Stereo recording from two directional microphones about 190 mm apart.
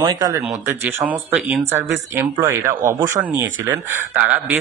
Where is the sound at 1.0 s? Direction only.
5° right (ahead or behind).